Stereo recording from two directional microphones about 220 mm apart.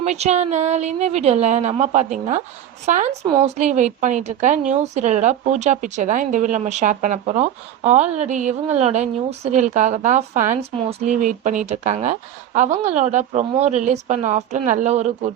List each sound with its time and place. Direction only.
0.0 s a woman's voice: 30° right (ahead or behind)